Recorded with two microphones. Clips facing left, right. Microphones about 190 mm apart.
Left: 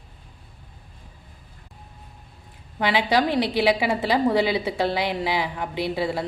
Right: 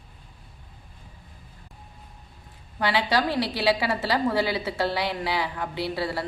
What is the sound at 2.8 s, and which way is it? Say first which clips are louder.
A woman's voice: left 3 dB; 15° left (ahead or behind).